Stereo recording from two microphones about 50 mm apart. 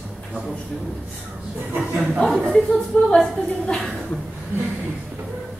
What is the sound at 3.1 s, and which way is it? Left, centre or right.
Speech, centre.